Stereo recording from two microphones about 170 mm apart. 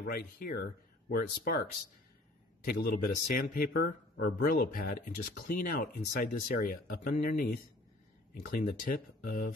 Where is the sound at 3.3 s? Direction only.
60° left (ahead or behind).